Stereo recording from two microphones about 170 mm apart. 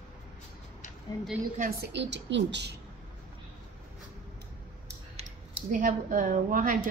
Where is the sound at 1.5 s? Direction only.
60° right (ahead or behind); by 2.7 s 85° right.